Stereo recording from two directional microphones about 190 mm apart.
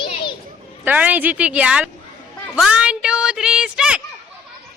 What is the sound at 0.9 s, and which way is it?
A woman's voice, 10° right (ahead or behind).